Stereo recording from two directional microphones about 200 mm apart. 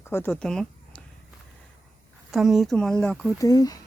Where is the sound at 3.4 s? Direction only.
15° left (ahead or behind).